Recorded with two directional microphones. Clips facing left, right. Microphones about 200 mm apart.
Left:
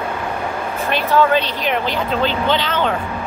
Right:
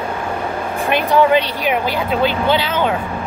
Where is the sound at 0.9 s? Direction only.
15° right (ahead or behind).